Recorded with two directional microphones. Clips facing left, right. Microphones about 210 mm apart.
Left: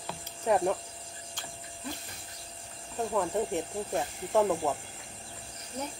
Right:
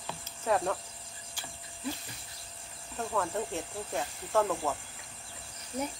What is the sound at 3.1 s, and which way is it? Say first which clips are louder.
Speech: left 3 dB; 15° left (ahead or behind).